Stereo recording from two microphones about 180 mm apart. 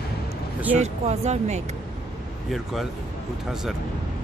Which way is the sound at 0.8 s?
40° right (ahead or behind).